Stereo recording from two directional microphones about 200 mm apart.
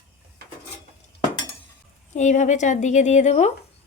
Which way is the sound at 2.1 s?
35° left (ahead or behind).